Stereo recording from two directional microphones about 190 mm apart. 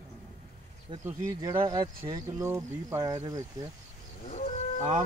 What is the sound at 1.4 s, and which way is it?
Speech, 20° right (ahead or behind).